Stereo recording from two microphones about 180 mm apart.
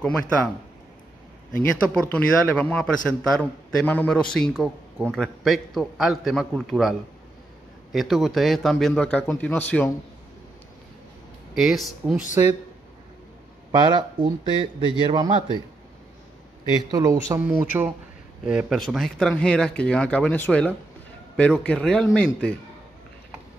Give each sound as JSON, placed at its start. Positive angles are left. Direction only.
{"t": 1.5, "sound": "a man's voice", "side_deg": 10}
{"t": 11.5, "sound": "a man's voice", "side_deg": 0}
{"t": 13.7, "sound": "speech", "side_deg": -25}
{"t": 16.7, "sound": "a man's voice", "side_deg": -20}